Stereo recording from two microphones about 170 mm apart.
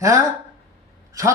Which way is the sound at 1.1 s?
20° right (ahead or behind).